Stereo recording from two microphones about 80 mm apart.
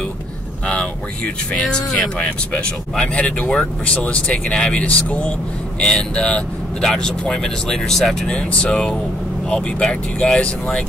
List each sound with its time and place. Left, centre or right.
0.7 s speech: centre